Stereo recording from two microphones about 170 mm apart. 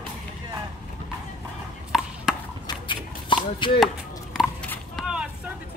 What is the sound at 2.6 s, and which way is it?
Chopping, 30° left (ahead or behind).